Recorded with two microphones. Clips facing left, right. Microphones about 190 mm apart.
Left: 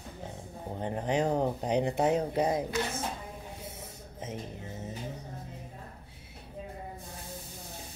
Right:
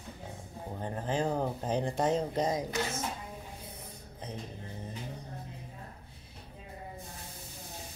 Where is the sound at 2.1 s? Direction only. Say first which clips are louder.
Left 2 dB; 15° left (ahead or behind).